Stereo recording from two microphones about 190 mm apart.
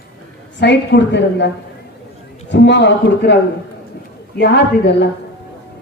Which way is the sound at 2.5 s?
65° left (ahead or behind).